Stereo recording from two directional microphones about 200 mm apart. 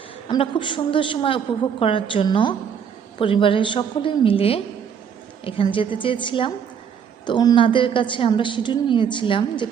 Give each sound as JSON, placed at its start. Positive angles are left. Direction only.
{"t": 0.3, "sound": "a woman's voice", "side_deg": 25}